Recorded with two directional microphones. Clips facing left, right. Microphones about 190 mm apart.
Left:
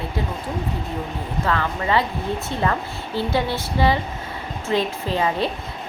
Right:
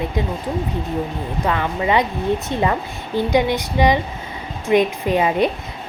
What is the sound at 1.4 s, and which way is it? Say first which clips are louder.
A woman's voice: right 3 dB; 15° right (ahead or behind).